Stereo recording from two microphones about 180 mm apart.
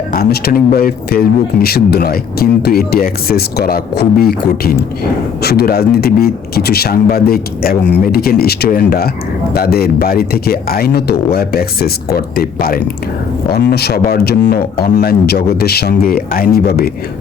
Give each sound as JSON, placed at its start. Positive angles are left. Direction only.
{"t": 0.1, "sound": "speech", "side_deg": 60}